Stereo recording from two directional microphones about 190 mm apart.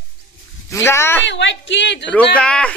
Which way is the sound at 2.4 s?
5° left (ahead or behind).